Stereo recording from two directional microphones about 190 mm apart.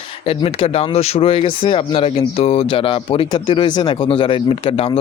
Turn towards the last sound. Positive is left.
turn(degrees=30)  # may be behind; listen again after turning